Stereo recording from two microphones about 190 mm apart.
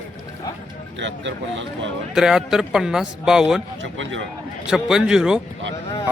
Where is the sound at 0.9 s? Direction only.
70° right (ahead or behind).